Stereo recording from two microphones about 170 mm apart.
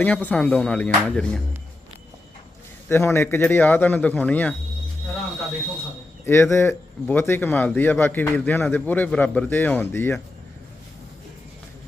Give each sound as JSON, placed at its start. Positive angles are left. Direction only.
{"t": 0.0, "sound": "a man's voice", "side_deg": 10}
{"t": 2.9, "sound": "a man's voice", "side_deg": 15}
{"t": 6.2, "sound": "a man's voice", "side_deg": 15}